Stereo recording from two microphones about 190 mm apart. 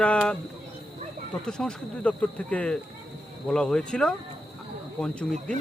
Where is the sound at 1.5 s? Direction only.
5° left (ahead or behind).